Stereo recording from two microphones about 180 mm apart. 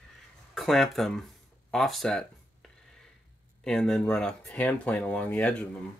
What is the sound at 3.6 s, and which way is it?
Speech, 5° left (ahead or behind).